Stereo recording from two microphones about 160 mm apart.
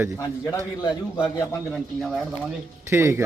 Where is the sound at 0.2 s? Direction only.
25° left (ahead or behind).